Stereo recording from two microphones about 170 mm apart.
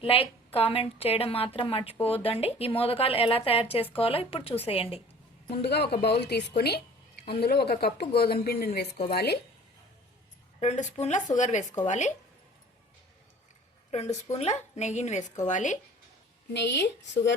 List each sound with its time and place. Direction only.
0.0 s a woman's voice: 35° left (ahead or behind)
5.6 s a woman's voice: 75° left (ahead or behind)
10.6 s a woman's voice: 40° left (ahead or behind)
13.9 s a woman's voice: 40° left (ahead or behind)
16.5 s a woman's voice: 85° left